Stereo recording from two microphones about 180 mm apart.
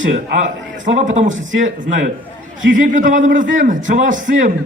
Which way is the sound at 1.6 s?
40° right (ahead or behind).